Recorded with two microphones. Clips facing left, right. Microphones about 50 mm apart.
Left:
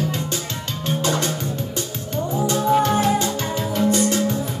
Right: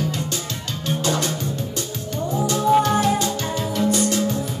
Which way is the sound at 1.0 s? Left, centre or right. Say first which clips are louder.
Even; left.